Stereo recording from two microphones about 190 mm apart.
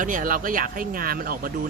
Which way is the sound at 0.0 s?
45° right (ahead or behind).